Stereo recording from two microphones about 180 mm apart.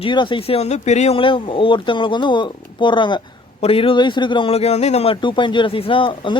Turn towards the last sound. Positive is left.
turn(degrees=30)  # may be behind; listen again after turning